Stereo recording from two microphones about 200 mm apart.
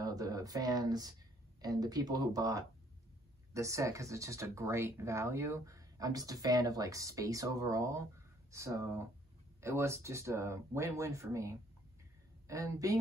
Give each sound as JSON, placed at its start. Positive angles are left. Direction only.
{"t": 0.0, "sound": "speech", "side_deg": -20}